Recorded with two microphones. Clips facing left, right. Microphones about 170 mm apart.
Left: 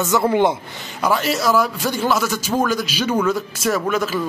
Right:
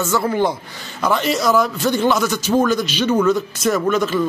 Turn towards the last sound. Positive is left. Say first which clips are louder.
# right 3 dB
turn(degrees=5)  # may be behind; listen again after turning